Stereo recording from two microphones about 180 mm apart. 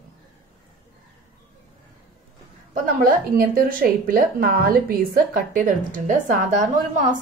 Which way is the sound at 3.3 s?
50° right (ahead or behind).